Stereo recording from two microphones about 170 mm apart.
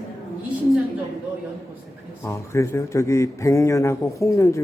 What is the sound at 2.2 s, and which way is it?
Speech, 15° left (ahead or behind).